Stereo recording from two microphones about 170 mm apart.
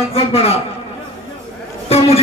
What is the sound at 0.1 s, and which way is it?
Speech, 35° left (ahead or behind).